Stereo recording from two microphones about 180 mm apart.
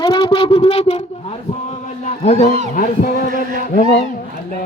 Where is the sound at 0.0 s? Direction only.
30° left (ahead or behind).